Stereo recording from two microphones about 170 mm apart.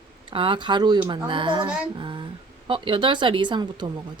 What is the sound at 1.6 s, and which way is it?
Speech, 5° right (ahead or behind).